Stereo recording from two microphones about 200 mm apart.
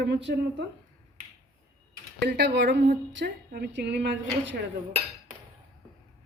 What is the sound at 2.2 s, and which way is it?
A woman's voice, 60° right (ahead or behind).